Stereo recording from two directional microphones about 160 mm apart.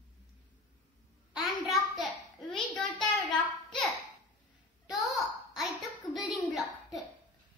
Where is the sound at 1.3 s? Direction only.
Centre (ahead or behind).